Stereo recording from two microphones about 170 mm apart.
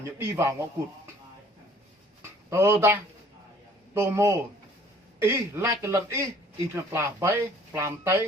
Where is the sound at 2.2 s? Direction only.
15° right (ahead or behind).